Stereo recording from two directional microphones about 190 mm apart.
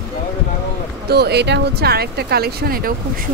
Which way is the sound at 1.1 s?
60° right (ahead or behind).